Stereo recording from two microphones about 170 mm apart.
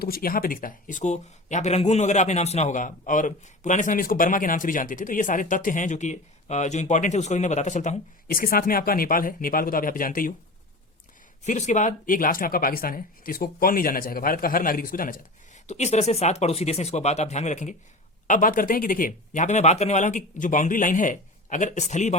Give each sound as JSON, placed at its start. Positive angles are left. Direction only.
{"t": 0.0, "sound": "speech", "side_deg": 60}
{"t": 11.4, "sound": "speech", "side_deg": 45}